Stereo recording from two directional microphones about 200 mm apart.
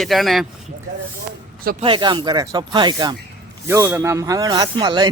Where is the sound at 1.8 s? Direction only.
25° right (ahead or behind).